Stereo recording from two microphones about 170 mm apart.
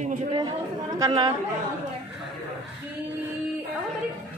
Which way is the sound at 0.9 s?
25° right (ahead or behind).